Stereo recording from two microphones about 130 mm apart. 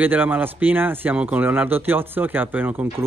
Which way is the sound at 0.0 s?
15° right (ahead or behind).